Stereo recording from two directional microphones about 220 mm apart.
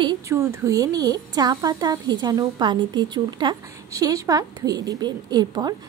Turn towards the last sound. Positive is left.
turn(degrees=-20)  # may be behind; listen again after turning